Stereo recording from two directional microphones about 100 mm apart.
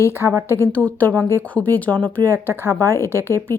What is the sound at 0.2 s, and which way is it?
Speech, 25° right (ahead or behind).